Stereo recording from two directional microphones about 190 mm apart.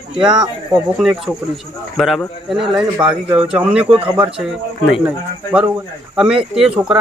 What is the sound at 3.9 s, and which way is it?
Speech, 25° right (ahead or behind).